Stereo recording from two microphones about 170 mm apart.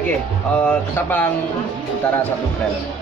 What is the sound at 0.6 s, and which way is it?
Music, 10° left (ahead or behind).